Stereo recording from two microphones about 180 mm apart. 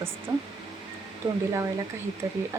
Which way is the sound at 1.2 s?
25° right (ahead or behind).